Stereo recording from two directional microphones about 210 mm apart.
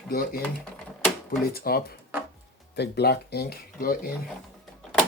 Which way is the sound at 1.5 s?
45° left (ahead or behind).